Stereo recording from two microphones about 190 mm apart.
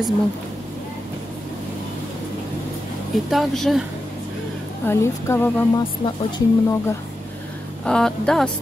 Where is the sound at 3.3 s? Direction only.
Centre (ahead or behind).